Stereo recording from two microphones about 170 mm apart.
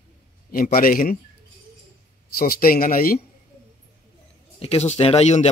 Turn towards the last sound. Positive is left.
turn(degrees=40)  # may be behind; listen again after turning